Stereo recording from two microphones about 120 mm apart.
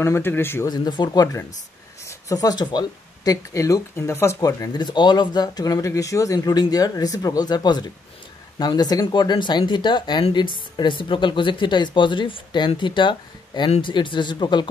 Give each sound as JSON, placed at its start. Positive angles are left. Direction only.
{"t": 0.0, "sound": "speech", "side_deg": 20}
{"t": 0.7, "sound": "speech", "side_deg": 35}